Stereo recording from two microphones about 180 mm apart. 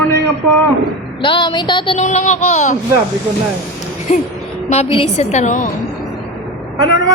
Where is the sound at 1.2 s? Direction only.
25° left (ahead or behind).